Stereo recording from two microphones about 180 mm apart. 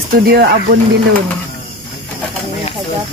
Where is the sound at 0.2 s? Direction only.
60° right (ahead or behind).